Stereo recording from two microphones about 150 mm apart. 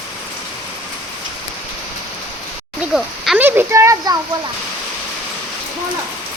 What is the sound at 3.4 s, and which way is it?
Speech, 15° right (ahead or behind).